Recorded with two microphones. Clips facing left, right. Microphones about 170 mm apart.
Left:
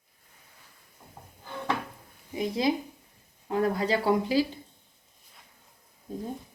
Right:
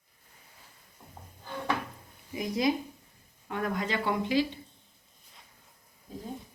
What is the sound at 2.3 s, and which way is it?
Speech, 30° left (ahead or behind).